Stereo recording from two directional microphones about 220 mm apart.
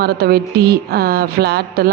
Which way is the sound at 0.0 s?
45° right (ahead or behind).